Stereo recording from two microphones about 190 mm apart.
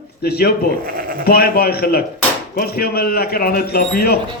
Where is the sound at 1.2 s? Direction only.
55° left (ahead or behind).